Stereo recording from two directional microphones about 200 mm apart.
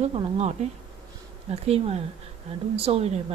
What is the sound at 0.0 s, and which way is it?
Speech, 35° right (ahead or behind).